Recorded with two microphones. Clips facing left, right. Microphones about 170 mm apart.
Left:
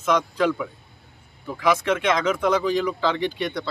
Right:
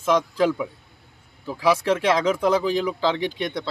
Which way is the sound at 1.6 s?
30° right (ahead or behind).